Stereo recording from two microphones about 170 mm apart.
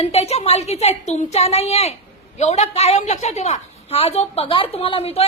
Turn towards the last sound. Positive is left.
turn(degrees=35)  # may be behind; listen again after turning